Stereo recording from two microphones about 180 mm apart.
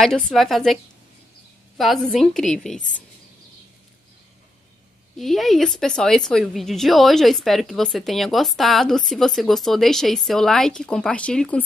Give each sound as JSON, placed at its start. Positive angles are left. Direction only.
{"t": 0.0, "sound": "a woman's voice", "side_deg": 0}
{"t": 1.8, "sound": "a woman's voice", "side_deg": 0}
{"t": 5.2, "sound": "a woman's voice", "side_deg": 0}